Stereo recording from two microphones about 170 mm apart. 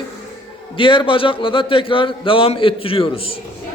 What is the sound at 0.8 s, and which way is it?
Speech, 30° left (ahead or behind).